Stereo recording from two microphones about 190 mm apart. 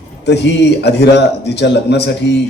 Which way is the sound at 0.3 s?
65° left (ahead or behind).